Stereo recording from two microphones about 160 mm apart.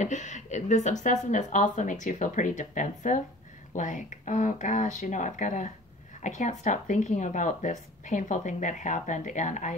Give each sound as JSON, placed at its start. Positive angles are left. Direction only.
{"t": 0.0, "sound": "speech", "side_deg": 50}